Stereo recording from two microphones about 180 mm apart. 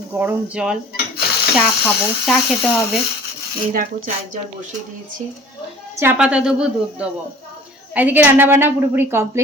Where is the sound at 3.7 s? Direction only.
45° right (ahead or behind).